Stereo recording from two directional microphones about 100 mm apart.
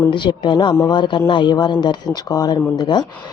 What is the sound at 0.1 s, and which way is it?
Speech, 50° left (ahead or behind).